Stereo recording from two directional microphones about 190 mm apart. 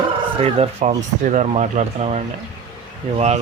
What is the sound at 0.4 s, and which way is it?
Speech, 30° right (ahead or behind).